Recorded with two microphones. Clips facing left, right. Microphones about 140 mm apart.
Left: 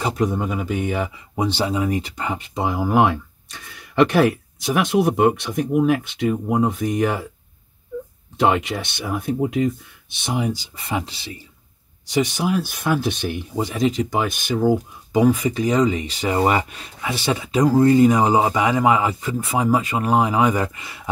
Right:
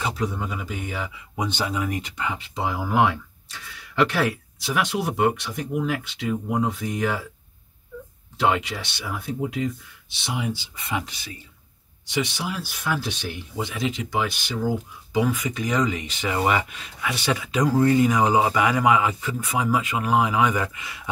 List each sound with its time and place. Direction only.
0.0 s speech: 50° left (ahead or behind)
8.4 s speech: 50° left (ahead or behind); by 11.3 s 30° left (ahead or behind)
12.1 s speech: 45° left (ahead or behind)